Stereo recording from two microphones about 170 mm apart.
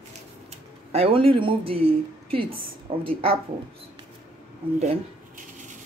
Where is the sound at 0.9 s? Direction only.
35° right (ahead or behind).